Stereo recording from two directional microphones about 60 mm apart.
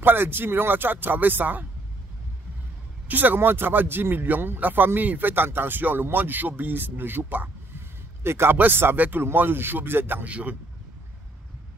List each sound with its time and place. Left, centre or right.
0.0 s speech: right
3.1 s speech: right
8.2 s speech: right
10.2 s speech: right